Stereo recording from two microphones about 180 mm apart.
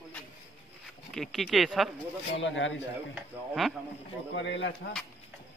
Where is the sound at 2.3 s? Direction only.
90° left.